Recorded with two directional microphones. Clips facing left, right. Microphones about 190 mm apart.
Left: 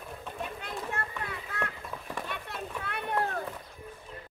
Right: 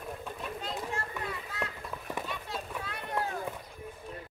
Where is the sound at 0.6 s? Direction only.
60° left (ahead or behind).